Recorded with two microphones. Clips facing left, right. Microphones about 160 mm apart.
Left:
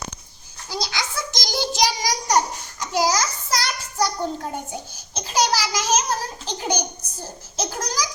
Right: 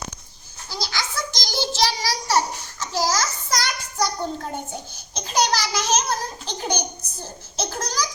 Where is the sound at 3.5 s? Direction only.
5° left (ahead or behind).